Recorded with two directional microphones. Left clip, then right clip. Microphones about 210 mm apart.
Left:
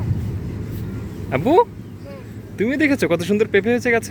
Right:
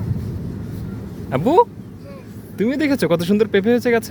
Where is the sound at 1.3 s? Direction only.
10° right (ahead or behind).